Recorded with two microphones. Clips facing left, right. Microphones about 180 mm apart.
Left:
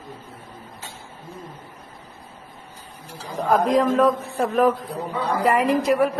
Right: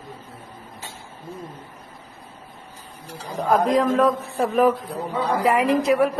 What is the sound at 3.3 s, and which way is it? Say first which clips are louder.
A woman's voice: even; centre (ahead or behind).